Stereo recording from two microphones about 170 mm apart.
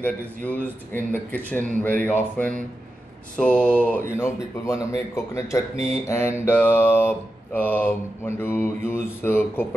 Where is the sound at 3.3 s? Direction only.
5° left (ahead or behind).